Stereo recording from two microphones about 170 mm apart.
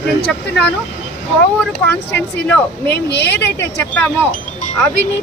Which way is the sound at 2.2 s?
10° left (ahead or behind).